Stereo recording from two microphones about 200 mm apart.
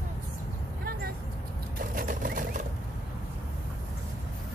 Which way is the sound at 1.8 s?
45° right (ahead or behind).